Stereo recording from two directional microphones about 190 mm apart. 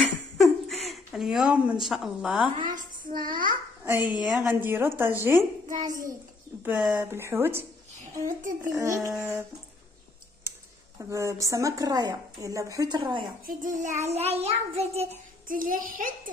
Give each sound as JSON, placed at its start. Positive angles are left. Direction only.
{"t": 0.0, "sound": "a sound", "side_deg": 0}
{"t": 0.8, "sound": "speech", "side_deg": 0}
{"t": 2.6, "sound": "child singing", "side_deg": -45}
{"t": 3.8, "sound": "a woman's voice", "side_deg": -10}
{"t": 8.0, "sound": "a child's voice", "side_deg": -45}
{"t": 8.7, "sound": "a woman's voice", "side_deg": -15}
{"t": 11.0, "sound": "a woman's voice", "side_deg": -15}
{"t": 13.5, "sound": "child singing", "side_deg": -45}